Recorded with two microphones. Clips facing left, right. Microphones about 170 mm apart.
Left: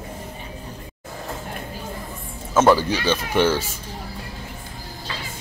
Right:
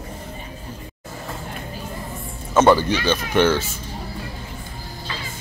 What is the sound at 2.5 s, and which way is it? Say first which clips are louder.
Speech: right 1 dB; 5° left (ahead or behind).